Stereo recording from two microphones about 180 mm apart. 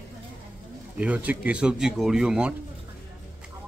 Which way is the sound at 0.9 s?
10° right (ahead or behind).